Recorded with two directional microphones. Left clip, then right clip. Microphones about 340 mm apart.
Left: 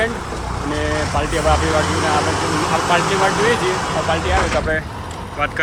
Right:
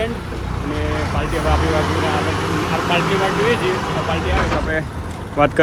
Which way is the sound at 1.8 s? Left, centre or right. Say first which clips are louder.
Left 2 dB; centre.